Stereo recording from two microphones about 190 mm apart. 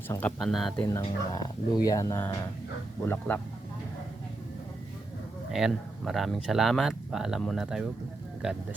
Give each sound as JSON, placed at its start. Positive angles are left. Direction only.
{"t": 0.1, "sound": "speech", "side_deg": 10}
{"t": 0.9, "sound": "speech", "side_deg": 20}
{"t": 5.5, "sound": "speech", "side_deg": 0}